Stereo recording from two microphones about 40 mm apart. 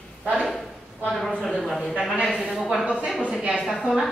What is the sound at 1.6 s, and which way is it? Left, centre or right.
A man's voice, centre.